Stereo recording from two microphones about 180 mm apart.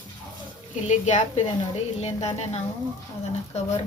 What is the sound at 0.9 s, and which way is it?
Female singing, 40° left (ahead or behind).